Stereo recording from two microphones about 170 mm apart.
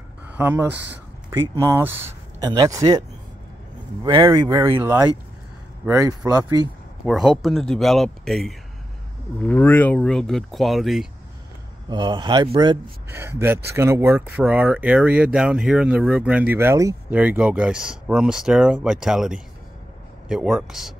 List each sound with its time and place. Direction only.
0.4 s speech: 10° right (ahead or behind)
2.4 s speech: 25° right (ahead or behind)
4.0 s speech: 20° right (ahead or behind)
7.1 s speech: centre (ahead or behind)
11.9 s speech: 25° right (ahead or behind); by 20.9 s centre (ahead or behind)